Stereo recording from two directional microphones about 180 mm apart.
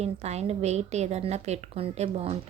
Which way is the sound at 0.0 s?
35° right (ahead or behind).